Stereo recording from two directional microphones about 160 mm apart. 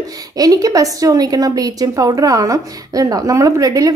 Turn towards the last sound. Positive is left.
turn(degrees=-20)  # may be behind; listen again after turning